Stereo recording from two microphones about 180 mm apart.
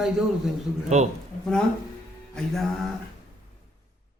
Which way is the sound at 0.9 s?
40° right (ahead or behind).